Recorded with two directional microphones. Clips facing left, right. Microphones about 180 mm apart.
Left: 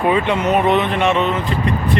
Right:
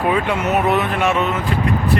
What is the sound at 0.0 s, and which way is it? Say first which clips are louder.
Speech: left 2 dB; 5° right (ahead or behind).